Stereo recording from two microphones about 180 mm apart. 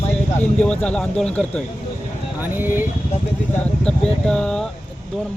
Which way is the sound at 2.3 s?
10° right (ahead or behind).